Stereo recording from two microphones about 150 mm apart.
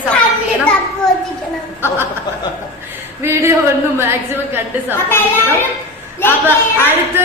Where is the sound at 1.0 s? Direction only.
5° left (ahead or behind).